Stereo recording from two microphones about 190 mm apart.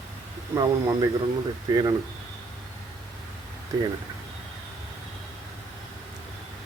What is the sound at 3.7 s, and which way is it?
Speech, 15° right (ahead or behind).